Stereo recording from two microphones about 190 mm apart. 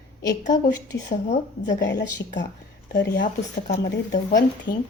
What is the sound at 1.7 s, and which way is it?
Speech, 65° left (ahead or behind).